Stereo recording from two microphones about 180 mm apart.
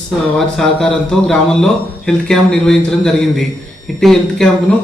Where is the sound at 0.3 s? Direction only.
Centre (ahead or behind).